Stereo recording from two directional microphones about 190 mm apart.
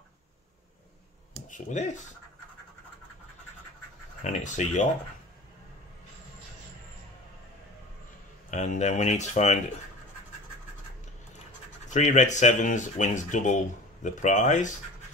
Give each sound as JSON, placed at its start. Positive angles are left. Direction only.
{"t": 1.5, "sound": "speech", "side_deg": 40}
{"t": 4.2, "sound": "speech", "side_deg": 40}
{"t": 8.5, "sound": "speech", "side_deg": 40}
{"t": 11.9, "sound": "speech", "side_deg": 40}